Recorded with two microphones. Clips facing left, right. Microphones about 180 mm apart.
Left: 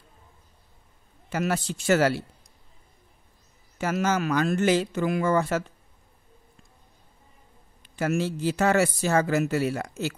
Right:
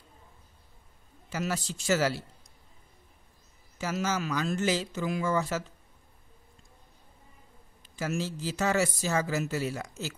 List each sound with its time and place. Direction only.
1.3 s speech: 60° left (ahead or behind)
3.7 s speech: 60° left (ahead or behind)
7.8 s speech: 60° left (ahead or behind)